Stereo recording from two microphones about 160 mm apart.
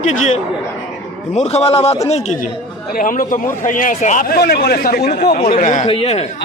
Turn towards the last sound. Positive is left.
turn(degrees=40)  # may be behind; listen again after turning